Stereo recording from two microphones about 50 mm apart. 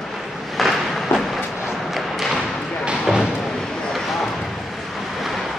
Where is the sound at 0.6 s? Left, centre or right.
Centre.